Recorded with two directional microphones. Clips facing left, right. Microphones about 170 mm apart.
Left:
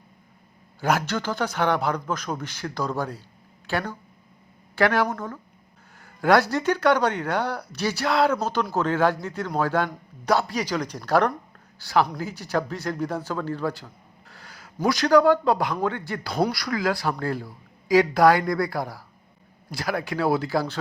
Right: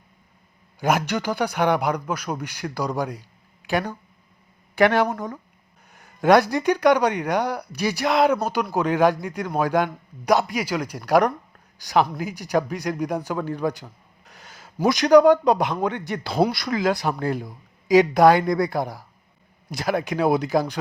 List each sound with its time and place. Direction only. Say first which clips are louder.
0.8 s a man's voice: right 2 dB; 15° right (ahead or behind)